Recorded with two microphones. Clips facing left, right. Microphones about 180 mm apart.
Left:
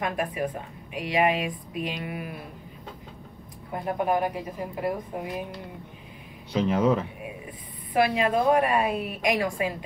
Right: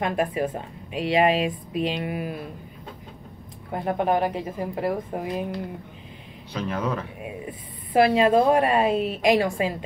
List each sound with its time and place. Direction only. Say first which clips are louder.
0.0 s a woman's voice: right 4 dB; 25° right (ahead or behind)
3.7 s a woman's voice: right 3 dB; 25° right (ahead or behind)
6.7 s speech: left 5 dB; 25° left (ahead or behind)
7.9 s a woman's voice: right 5 dB; 30° right (ahead or behind)